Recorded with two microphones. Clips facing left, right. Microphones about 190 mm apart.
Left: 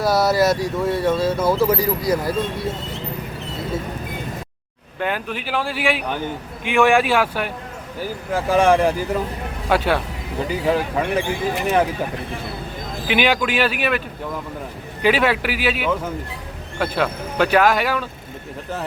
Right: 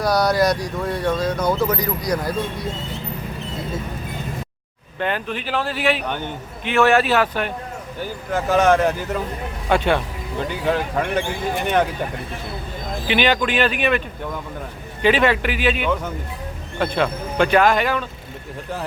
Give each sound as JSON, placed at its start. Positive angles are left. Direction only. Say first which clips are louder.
{"t": 0.0, "sound": "speech", "louder": "left 1 dB", "side_deg": 5}
{"t": 4.9, "sound": "speech", "louder": "even", "side_deg": 5}
{"t": 13.1, "sound": "speech", "louder": "even", "side_deg": 10}
{"t": 15.0, "sound": "speech", "louder": "right 1 dB", "side_deg": 5}